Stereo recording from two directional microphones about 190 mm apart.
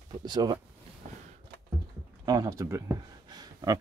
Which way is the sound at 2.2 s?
20° right (ahead or behind).